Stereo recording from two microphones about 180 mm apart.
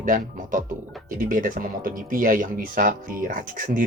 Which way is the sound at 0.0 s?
50° right (ahead or behind).